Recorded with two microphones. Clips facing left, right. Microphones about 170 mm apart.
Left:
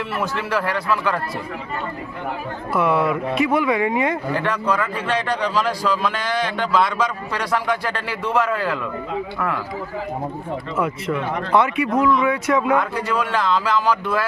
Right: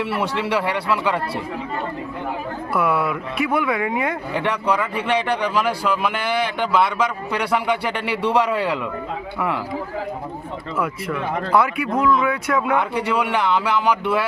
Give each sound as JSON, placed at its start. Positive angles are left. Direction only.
{"t": 0.0, "sound": "a man's voice", "side_deg": -10}
{"t": 2.7, "sound": "speech", "side_deg": -5}
{"t": 4.4, "sound": "a man's voice", "side_deg": -10}
{"t": 10.8, "sound": "speech", "side_deg": 0}
{"t": 12.7, "sound": "a man's voice", "side_deg": -10}